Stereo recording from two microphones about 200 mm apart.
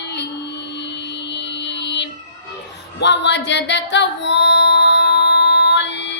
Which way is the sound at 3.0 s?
60° left (ahead or behind).